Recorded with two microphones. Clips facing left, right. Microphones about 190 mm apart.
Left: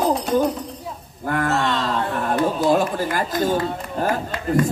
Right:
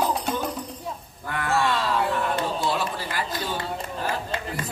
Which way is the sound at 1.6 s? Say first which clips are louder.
Left 2 dB; 10° right (ahead or behind).